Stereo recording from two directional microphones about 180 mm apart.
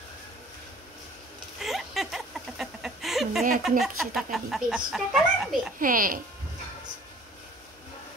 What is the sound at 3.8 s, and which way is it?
Speech, centre (ahead or behind).